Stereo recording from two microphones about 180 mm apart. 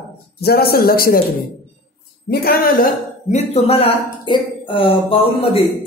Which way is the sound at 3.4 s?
35° left (ahead or behind).